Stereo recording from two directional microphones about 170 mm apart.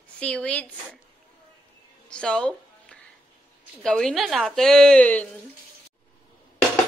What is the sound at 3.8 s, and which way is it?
A woman's voice, 5° left (ahead or behind).